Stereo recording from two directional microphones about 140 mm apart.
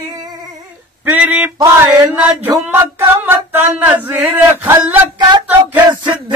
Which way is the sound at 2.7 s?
15° right (ahead or behind).